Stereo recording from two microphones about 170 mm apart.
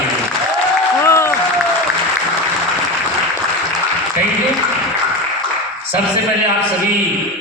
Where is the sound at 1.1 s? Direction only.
15° left (ahead or behind).